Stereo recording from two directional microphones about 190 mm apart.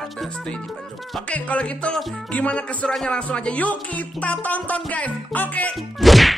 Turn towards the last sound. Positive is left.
turn(degrees=0)  # may be behind; listen again after turning